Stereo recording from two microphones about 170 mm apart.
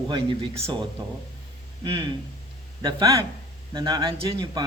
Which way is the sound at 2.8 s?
25° right (ahead or behind).